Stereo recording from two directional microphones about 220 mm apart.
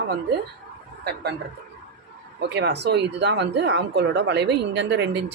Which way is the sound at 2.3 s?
50° right (ahead or behind).